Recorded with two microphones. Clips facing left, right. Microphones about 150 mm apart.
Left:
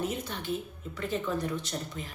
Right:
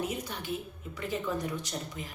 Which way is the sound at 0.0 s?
10° right (ahead or behind).